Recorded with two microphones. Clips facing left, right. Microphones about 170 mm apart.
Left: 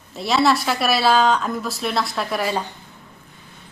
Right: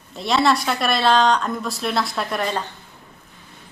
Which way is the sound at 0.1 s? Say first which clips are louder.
Left 1 dB; centre (ahead or behind).